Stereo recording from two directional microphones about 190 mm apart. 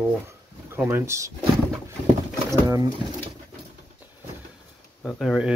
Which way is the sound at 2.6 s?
20° right (ahead or behind).